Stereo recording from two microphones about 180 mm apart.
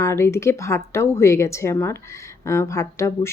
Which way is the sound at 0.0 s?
15° left (ahead or behind).